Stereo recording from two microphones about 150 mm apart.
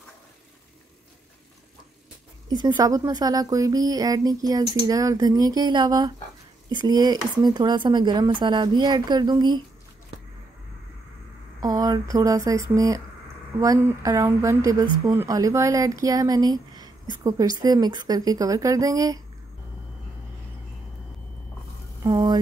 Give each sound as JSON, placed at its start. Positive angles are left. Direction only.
{"t": 2.5, "sound": "speech", "side_deg": -25}
{"t": 11.6, "sound": "speech", "side_deg": -25}
{"t": 22.0, "sound": "a sound", "side_deg": -30}